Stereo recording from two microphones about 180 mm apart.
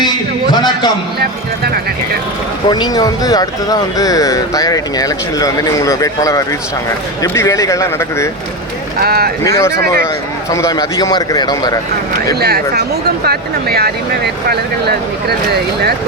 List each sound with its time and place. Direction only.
0.5 s a sound: 25° left (ahead or behind)
1.2 s speech: 60° right (ahead or behind)
2.6 s speech: 25° left (ahead or behind)
9.0 s speech: 60° right (ahead or behind)
9.6 s speech: 15° left (ahead or behind)
12.3 s speech: 60° right (ahead or behind)